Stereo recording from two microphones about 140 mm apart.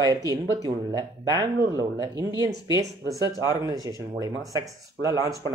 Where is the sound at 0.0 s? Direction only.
25° right (ahead or behind).